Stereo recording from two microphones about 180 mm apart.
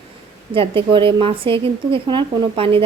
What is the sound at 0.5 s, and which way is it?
A woman's voice, 30° right (ahead or behind).